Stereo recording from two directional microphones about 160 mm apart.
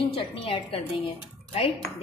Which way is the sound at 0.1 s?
35° left (ahead or behind).